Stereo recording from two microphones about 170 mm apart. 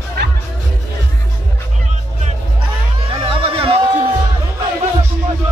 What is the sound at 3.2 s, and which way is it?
Music, 30° right (ahead or behind).